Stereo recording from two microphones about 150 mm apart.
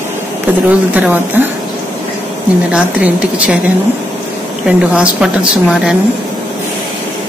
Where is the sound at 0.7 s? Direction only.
10° right (ahead or behind).